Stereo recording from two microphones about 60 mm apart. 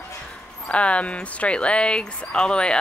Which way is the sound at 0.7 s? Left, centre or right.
Centre.